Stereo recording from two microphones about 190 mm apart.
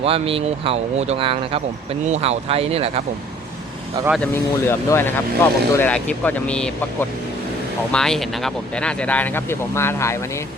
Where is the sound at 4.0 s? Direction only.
20° right (ahead or behind).